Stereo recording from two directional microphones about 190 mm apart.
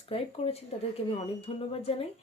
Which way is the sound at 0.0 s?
30° left (ahead or behind).